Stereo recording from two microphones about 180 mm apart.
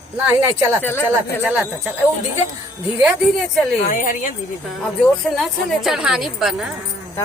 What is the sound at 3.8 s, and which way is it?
Speech, 50° left (ahead or behind).